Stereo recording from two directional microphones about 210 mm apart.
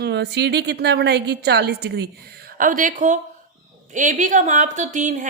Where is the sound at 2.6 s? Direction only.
40° right (ahead or behind).